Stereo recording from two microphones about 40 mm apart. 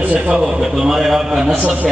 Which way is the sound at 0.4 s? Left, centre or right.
Centre.